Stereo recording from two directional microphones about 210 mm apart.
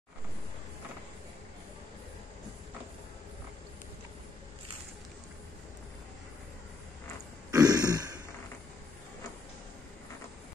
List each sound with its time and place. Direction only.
7.5 s throat clearing: 20° right (ahead or behind)